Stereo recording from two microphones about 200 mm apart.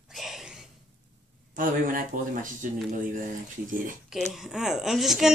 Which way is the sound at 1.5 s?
45° right (ahead or behind).